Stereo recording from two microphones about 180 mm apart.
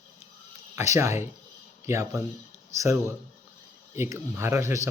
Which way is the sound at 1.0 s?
15° right (ahead or behind).